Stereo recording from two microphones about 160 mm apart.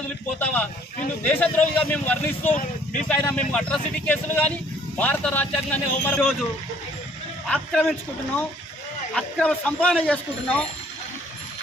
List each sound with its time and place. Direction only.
0.4 s speech: 10° left (ahead or behind)
7.4 s a man's voice: 5° left (ahead or behind)
9.1 s speech: 5° left (ahead or behind)